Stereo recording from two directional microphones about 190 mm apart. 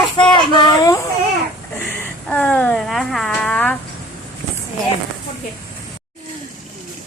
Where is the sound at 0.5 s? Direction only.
20° left (ahead or behind).